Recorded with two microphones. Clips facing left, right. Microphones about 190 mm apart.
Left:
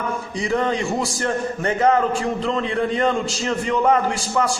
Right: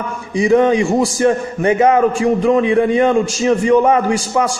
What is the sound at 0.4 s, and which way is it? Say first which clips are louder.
Speech: right 10 dB; 20° right (ahead or behind).